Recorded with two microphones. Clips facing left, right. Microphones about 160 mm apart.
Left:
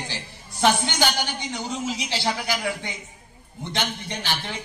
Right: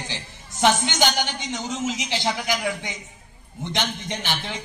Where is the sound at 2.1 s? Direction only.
15° right (ahead or behind).